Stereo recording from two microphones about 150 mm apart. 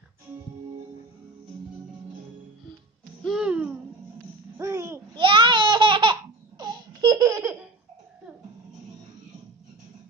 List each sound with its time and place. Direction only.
3.3 s a sound: 5° right (ahead or behind)
4.6 s babbling: 20° right (ahead or behind)
5.1 s babbling: 35° right (ahead or behind)
6.6 s laughter: 30° right (ahead or behind)